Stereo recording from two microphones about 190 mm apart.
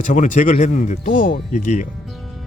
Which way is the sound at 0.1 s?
40° left (ahead or behind).